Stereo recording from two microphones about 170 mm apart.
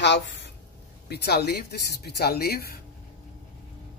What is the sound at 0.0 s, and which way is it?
Speech, 90° left.